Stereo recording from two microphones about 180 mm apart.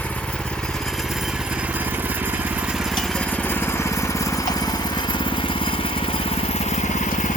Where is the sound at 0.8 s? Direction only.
Centre (ahead or behind).